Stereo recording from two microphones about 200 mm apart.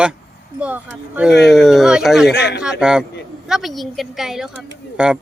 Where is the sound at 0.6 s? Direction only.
5° right (ahead or behind).